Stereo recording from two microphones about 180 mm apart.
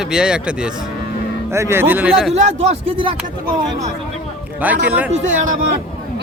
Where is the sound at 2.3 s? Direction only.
35° right (ahead or behind).